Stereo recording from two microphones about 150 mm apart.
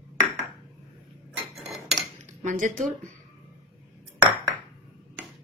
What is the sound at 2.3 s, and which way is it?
Speech, 55° right (ahead or behind).